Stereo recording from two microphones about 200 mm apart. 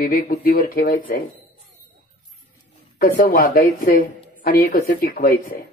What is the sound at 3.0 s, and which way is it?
Speech, 45° left (ahead or behind).